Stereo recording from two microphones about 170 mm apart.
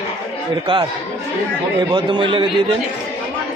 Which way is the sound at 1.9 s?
25° right (ahead or behind).